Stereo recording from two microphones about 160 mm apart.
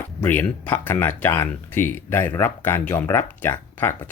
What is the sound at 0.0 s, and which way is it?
Speech, 10° left (ahead or behind).